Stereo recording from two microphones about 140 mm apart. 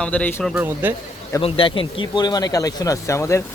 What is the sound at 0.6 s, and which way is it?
Speech, 15° right (ahead or behind).